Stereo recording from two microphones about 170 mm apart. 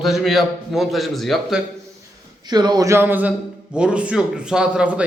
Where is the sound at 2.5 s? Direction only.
25° right (ahead or behind).